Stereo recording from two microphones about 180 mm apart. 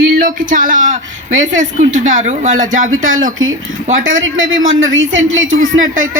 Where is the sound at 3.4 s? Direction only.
90° right.